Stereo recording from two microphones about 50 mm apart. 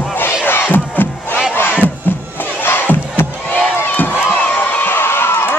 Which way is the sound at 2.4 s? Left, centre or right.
Left.